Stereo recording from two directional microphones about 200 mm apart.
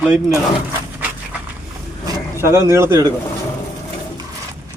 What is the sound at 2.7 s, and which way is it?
Speech, 15° right (ahead or behind).